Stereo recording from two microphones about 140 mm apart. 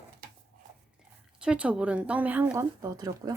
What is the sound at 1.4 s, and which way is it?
Speech, 10° right (ahead or behind).